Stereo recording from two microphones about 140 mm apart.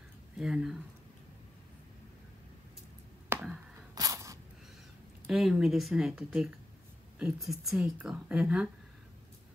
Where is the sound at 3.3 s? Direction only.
15° right (ahead or behind).